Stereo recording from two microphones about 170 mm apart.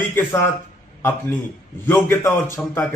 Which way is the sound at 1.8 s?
15° left (ahead or behind).